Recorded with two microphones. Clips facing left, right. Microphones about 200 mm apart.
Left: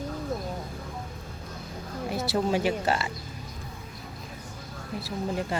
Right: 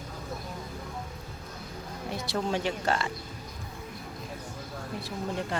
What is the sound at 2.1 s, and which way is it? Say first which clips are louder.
Speech: left 4 dB; 5° left (ahead or behind).